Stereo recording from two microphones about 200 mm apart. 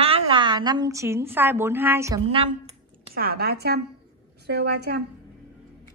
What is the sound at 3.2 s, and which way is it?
A woman's voice, 50° right (ahead or behind).